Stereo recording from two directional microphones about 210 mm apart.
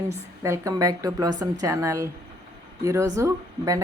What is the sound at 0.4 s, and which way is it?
A woman's voice, 15° right (ahead or behind).